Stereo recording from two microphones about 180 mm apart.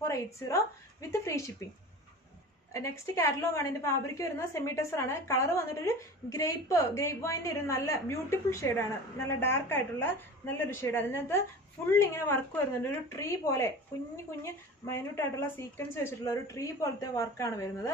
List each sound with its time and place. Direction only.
0.0 s a woman's voice: 15° left (ahead or behind)
2.7 s a woman's voice: 15° left (ahead or behind)